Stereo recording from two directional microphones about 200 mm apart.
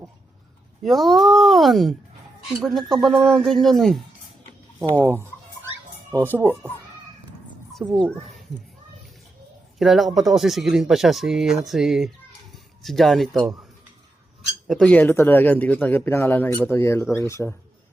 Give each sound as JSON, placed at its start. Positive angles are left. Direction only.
{"t": 0.8, "sound": "speech", "side_deg": 0}
{"t": 6.3, "sound": "a child's voice", "side_deg": -10}
{"t": 8.0, "sound": "a sound", "side_deg": 0}
{"t": 9.7, "sound": "speech", "side_deg": 0}
{"t": 14.7, "sound": "speech", "side_deg": 5}
{"t": 17.0, "sound": "speech", "side_deg": 0}
{"t": 17.2, "sound": "speech", "side_deg": 15}